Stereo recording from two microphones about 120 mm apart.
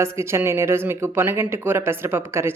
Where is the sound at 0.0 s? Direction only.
20° right (ahead or behind).